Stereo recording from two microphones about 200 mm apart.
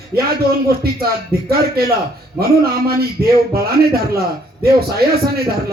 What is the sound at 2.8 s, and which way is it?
A man's voice, 50° right (ahead or behind).